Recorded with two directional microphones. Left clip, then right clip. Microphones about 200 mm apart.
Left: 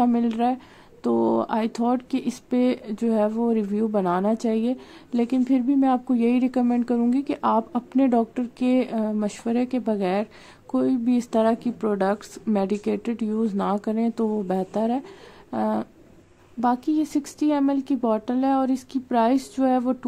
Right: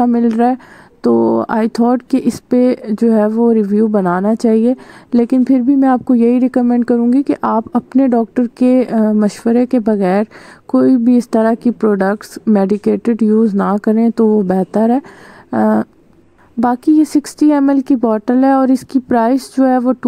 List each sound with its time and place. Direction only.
0.0 s speech: 35° right (ahead or behind)
16.5 s speech: 45° right (ahead or behind)